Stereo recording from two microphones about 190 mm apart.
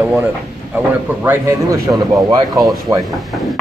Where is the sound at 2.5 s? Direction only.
Centre (ahead or behind).